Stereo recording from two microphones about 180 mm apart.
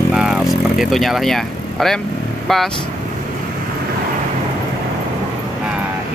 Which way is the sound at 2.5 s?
Centre (ahead or behind).